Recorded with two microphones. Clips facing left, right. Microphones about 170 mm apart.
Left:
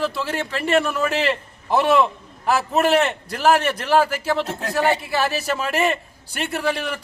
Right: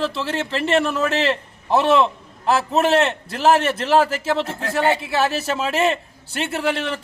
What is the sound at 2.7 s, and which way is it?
A man's voice, centre (ahead or behind).